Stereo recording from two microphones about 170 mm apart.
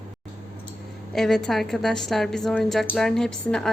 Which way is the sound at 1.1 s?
Centre (ahead or behind).